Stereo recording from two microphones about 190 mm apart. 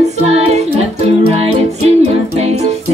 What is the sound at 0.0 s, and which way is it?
Music, 35° right (ahead or behind).